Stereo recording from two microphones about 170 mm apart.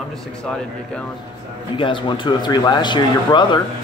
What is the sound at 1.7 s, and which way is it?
Speech, 30° left (ahead or behind).